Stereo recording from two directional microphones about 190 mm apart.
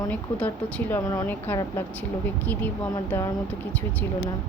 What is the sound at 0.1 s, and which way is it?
Speech, 10° left (ahead or behind).